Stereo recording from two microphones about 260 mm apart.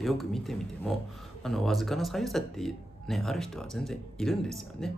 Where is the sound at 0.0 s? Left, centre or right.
Centre.